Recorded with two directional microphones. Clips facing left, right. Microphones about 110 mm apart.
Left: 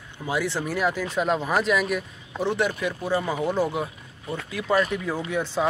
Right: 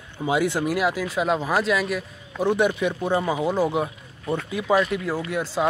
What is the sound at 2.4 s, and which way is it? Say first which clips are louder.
Speech: right 4 dB; 15° right (ahead or behind).